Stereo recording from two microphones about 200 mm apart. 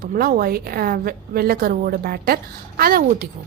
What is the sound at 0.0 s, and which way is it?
A woman's voice, 45° right (ahead or behind).